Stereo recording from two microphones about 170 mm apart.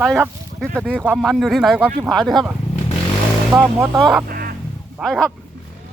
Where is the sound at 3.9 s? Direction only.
Centre (ahead or behind).